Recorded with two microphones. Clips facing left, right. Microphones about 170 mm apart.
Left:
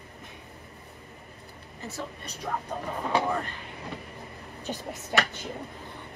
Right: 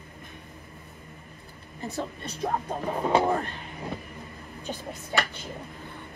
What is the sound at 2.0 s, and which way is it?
Speech, 35° right (ahead or behind).